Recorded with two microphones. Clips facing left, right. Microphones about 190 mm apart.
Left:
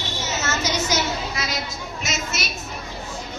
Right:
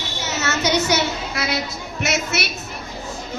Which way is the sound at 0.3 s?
65° right (ahead or behind).